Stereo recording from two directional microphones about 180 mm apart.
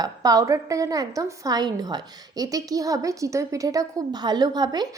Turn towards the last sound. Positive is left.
turn(degrees=-25)  # may be behind; listen again after turning